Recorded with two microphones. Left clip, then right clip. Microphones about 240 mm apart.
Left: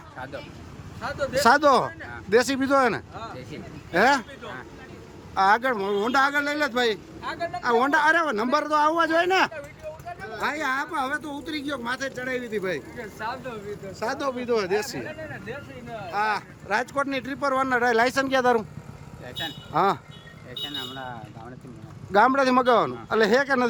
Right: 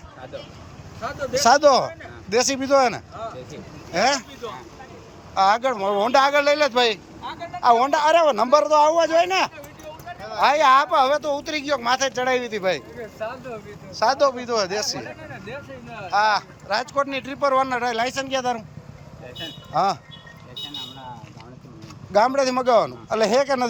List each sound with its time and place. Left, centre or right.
1.0 s speech: centre
5.3 s speech: centre
7.2 s speech: left
7.6 s speech: centre
10.2 s speech: centre
14.0 s speech: centre
19.7 s speech: centre
22.1 s speech: centre